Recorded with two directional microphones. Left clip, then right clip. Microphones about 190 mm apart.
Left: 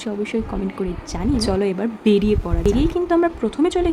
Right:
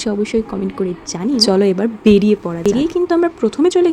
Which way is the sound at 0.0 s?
20° right (ahead or behind).